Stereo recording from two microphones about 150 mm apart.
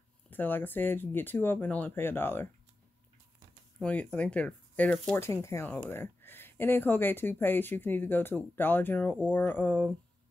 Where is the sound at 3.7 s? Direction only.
10° left (ahead or behind).